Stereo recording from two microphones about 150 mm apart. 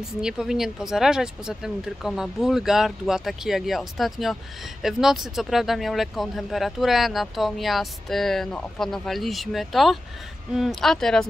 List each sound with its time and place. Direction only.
0.2 s speech: 5° right (ahead or behind)